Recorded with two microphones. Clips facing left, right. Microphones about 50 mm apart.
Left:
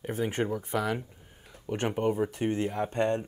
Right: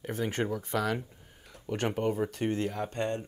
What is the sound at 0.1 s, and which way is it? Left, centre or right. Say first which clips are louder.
Speech: left 2 dB; centre.